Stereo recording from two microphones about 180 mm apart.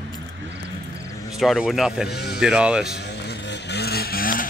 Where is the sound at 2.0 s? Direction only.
65° left (ahead or behind).